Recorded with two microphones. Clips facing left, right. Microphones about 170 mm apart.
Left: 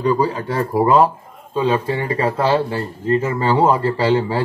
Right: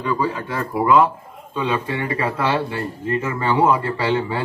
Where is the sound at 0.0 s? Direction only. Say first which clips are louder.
Left 5 dB; 35° left (ahead or behind).